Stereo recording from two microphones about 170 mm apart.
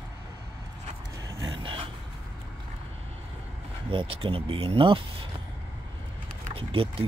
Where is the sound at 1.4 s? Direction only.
30° right (ahead or behind).